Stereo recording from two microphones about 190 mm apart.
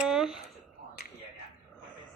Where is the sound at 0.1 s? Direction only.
Centre (ahead or behind).